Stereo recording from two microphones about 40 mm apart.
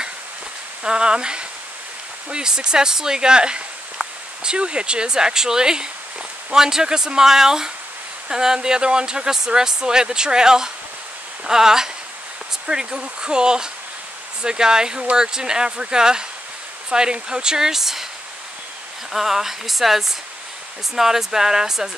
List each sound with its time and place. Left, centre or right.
0.8 s speech: right
19.1 s speech: centre